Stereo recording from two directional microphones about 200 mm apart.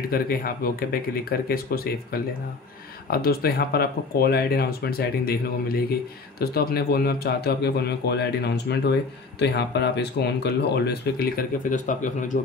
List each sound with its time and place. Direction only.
0.1 s speech: 45° left (ahead or behind)